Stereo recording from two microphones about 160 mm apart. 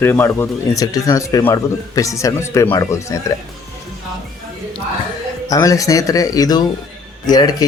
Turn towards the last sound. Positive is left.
turn(degrees=25)  # may be behind; listen again after turning